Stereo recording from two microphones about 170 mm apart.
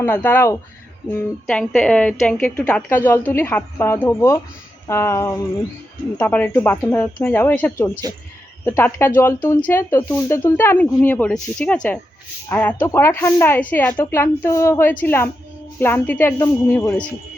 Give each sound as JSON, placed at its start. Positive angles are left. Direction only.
{"t": 0.0, "sound": "a woman's voice", "side_deg": 10}